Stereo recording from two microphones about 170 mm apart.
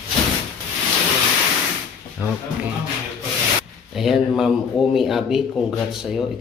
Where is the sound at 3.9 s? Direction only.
Centre (ahead or behind).